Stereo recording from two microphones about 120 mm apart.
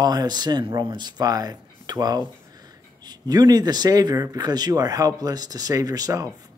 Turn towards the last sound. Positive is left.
turn(degrees=-30)  # may be behind; listen again after turning